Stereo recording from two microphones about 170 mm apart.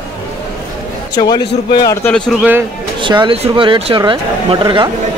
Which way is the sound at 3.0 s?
30° right (ahead or behind).